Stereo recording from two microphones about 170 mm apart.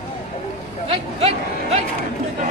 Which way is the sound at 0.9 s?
35° right (ahead or behind).